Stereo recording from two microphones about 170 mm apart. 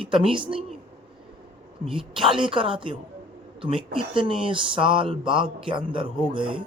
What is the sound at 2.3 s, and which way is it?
Speech, 30° right (ahead or behind).